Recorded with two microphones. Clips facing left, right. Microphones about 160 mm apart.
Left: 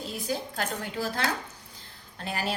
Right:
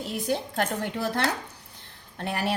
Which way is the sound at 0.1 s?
60° right (ahead or behind).